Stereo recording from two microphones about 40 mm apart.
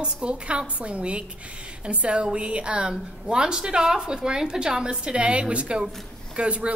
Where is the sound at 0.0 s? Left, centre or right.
Right.